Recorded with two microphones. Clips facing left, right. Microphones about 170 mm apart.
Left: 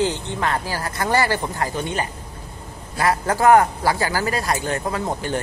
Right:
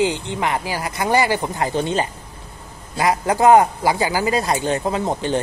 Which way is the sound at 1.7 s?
30° right (ahead or behind).